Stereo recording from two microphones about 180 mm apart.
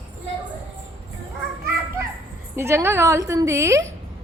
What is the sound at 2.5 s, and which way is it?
A woman's voice, 15° right (ahead or behind).